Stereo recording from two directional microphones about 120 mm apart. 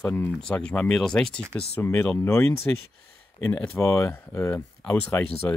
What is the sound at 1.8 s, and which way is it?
Speech, 15° left (ahead or behind).